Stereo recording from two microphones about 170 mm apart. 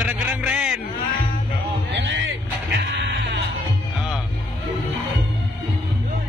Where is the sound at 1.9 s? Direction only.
90° right.